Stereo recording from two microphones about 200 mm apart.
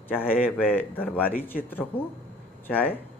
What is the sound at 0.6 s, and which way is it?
Speech, 10° left (ahead or behind).